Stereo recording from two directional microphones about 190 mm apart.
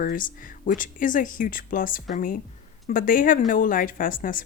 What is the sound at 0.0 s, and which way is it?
A woman's voice, 45° left (ahead or behind).